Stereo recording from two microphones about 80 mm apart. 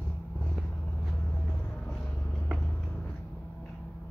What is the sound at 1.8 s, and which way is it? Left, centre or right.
Vehicle, centre.